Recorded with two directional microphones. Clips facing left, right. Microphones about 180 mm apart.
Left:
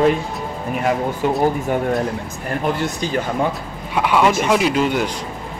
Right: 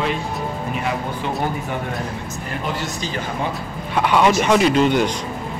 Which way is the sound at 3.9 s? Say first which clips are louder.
Even; 5° left (ahead or behind).